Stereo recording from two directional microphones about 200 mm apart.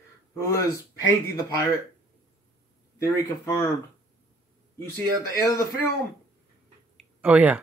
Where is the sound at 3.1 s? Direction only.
15° left (ahead or behind).